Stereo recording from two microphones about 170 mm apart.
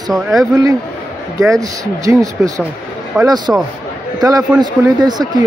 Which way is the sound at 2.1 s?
20° right (ahead or behind).